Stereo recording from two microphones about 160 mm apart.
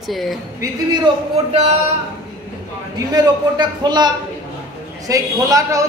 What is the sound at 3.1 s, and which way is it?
A man's voice, 25° right (ahead or behind).